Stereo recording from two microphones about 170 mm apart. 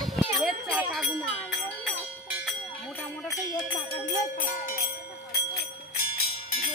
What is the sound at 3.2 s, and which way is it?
Music, 25° left (ahead or behind).